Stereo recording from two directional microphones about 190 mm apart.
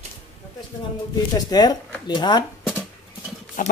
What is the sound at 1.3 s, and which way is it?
Speech, 20° left (ahead or behind).